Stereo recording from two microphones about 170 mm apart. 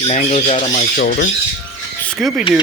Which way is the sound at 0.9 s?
65° left (ahead or behind).